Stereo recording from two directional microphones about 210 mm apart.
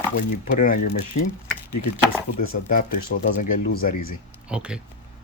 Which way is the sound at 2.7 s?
40° left (ahead or behind).